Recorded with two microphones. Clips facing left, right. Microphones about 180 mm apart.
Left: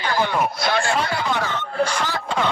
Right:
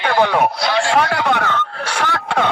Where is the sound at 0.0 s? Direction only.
65° right (ahead or behind).